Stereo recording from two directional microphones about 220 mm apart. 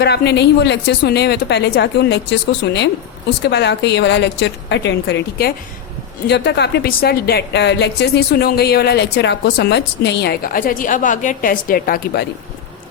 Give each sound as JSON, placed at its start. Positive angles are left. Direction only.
{"t": 0.0, "sound": "a woman's voice", "side_deg": 50}